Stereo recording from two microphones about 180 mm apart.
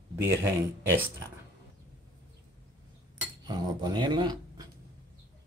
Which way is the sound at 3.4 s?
25° right (ahead or behind).